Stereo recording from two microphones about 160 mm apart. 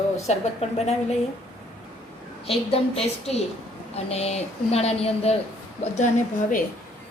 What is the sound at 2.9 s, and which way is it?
A woman's voice, 40° left (ahead or behind).